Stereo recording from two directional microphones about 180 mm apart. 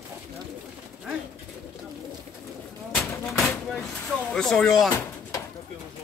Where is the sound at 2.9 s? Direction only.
Centre (ahead or behind).